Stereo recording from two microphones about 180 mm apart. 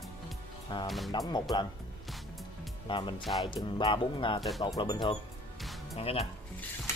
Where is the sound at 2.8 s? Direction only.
25° left (ahead or behind).